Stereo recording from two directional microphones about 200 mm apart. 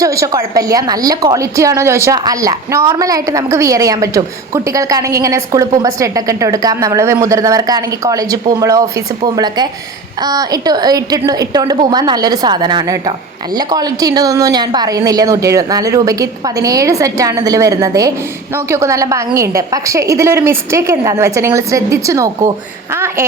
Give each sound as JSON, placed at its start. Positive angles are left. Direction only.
{"t": 0.0, "sound": "a woman's voice", "side_deg": -15}